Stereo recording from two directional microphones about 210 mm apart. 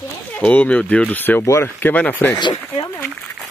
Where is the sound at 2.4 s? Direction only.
20° left (ahead or behind).